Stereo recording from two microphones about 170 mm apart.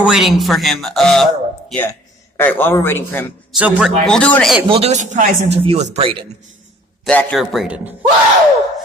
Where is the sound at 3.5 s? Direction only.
5° right (ahead or behind).